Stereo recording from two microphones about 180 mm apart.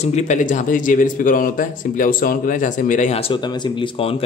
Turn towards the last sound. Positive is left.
turn(degrees=30)  # may be behind; listen again after turning